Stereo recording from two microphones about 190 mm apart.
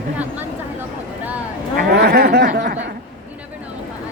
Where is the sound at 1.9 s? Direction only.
55° right (ahead or behind).